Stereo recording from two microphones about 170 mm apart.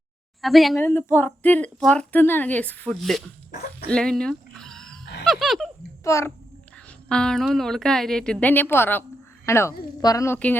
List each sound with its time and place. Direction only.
0.4 s a woman's voice: centre (ahead or behind)
0.8 s a woman's voice: 15° left (ahead or behind)
3.8 s a sound: 5° left (ahead or behind)
5.2 s a woman's voice: centre (ahead or behind)
6.0 s a child's voice: 15° left (ahead or behind)
7.1 s a woman's voice: 5° left (ahead or behind)